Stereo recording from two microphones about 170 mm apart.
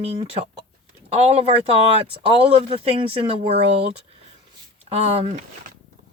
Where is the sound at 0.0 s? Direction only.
35° right (ahead or behind).